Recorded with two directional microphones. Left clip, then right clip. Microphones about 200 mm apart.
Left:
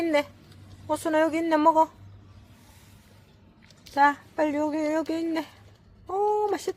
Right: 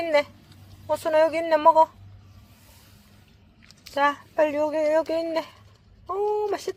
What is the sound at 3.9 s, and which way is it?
Speech, 5° left (ahead or behind).